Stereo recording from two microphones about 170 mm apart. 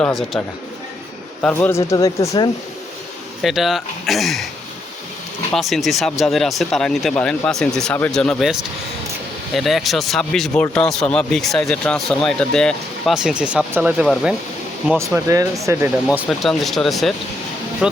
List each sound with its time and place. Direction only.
0.0 s speech: 5° left (ahead or behind)
3.4 s speech: centre (ahead or behind)
5.5 s speech: centre (ahead or behind)
14.8 s speech: 15° right (ahead or behind); by 17.2 s centre (ahead or behind)